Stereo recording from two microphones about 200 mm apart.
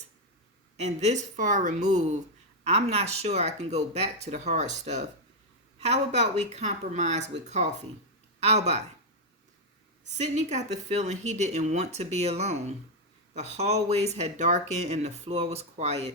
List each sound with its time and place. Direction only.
0.8 s speech: 35° right (ahead or behind)
10.1 s speech: 35° right (ahead or behind)